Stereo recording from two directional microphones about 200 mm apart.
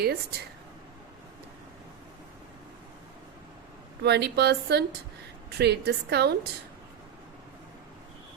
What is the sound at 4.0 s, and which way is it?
A woman's voice, 55° right (ahead or behind).